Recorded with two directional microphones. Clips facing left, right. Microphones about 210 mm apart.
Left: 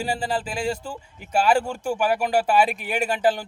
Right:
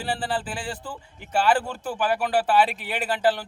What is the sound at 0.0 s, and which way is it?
A man's voice, 10° left (ahead or behind).